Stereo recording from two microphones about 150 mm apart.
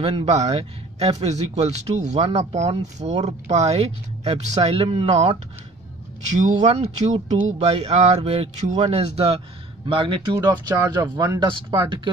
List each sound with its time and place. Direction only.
0.0 s speech: 40° right (ahead or behind)
6.3 s speech: 50° right (ahead or behind); by 12.1 s 30° right (ahead or behind)